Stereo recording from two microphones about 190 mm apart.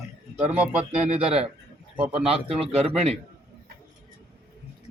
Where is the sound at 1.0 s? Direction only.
35° right (ahead or behind).